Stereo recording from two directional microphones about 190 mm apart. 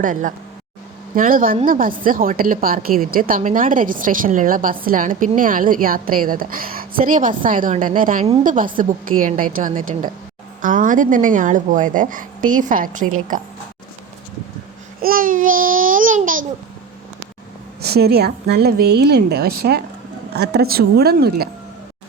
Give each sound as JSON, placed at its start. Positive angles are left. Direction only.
{"t": 0.0, "sound": "a woman's voice", "side_deg": -45}
{"t": 15.0, "sound": "a woman's voice", "side_deg": -50}
{"t": 17.8, "sound": "a woman's voice", "side_deg": -55}